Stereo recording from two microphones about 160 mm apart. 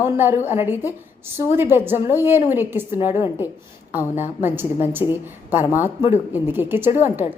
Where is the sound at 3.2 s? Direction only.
30° left (ahead or behind).